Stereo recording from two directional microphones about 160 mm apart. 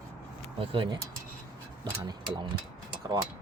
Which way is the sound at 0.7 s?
35° right (ahead or behind).